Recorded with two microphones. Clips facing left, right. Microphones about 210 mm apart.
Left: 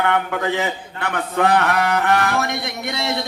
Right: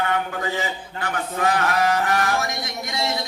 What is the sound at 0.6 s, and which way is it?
A man's voice, 65° left (ahead or behind).